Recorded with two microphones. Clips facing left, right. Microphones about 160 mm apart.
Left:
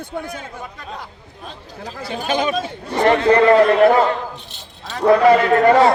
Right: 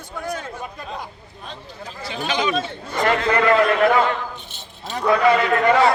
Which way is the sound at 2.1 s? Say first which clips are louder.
Left 3 dB; 50° left (ahead or behind).